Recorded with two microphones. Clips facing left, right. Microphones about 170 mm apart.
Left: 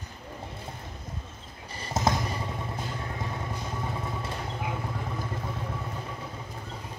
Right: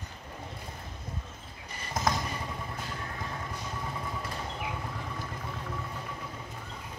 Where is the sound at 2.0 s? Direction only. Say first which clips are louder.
Left 3 dB; 25° left (ahead or behind).